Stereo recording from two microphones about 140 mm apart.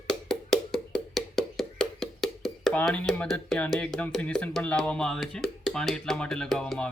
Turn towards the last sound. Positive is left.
turn(degrees=5)  # may be behind; listen again after turning